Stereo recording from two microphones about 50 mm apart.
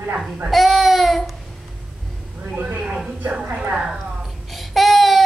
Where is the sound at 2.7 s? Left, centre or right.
Centre.